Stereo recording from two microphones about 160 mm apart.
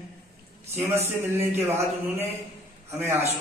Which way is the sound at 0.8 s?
15° right (ahead or behind).